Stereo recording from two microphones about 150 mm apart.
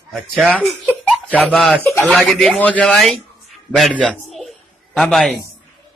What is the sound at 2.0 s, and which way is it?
Speech, centre (ahead or behind).